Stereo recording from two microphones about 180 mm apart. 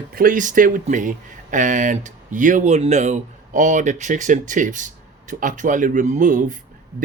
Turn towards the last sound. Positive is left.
turn(degrees=-45)  # may be behind; listen again after turning